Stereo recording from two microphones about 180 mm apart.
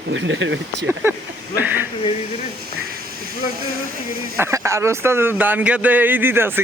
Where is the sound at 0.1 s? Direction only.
90° right.